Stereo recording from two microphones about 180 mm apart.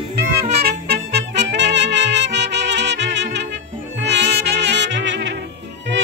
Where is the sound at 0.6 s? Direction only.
65° right (ahead or behind).